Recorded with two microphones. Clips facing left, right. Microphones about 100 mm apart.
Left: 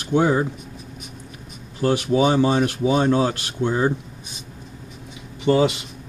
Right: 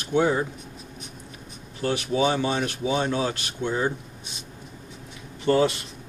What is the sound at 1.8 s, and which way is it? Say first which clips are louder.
Speech: left 6 dB; 35° left (ahead or behind).